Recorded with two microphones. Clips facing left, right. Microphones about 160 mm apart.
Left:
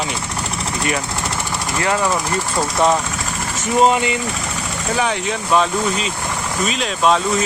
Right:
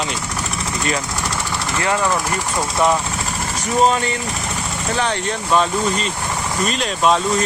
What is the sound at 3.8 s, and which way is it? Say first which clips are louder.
Speech: left 2 dB; 15° left (ahead or behind).